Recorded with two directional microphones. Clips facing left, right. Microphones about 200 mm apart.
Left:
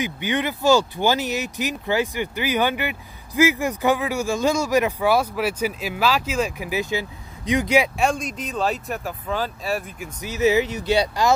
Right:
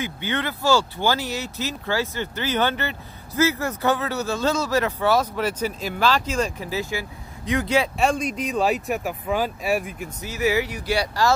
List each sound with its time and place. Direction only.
0.0 s speech: 15° left (ahead or behind)
8.0 s speech: 5° right (ahead or behind)
10.2 s speech: 20° left (ahead or behind)